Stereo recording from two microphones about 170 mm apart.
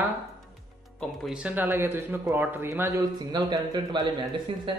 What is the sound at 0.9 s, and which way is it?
A man's voice, centre (ahead or behind).